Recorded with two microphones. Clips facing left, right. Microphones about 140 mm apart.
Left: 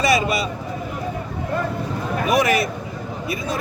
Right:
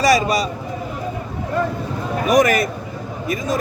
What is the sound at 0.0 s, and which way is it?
Speech, 35° right (ahead or behind).